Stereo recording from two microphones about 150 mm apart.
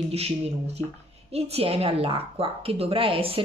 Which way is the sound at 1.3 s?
40° right (ahead or behind).